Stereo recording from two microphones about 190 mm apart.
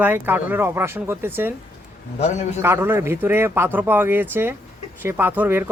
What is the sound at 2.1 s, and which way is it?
Speech, 35° left (ahead or behind).